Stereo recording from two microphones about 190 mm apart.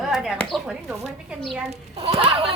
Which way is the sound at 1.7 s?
30° right (ahead or behind).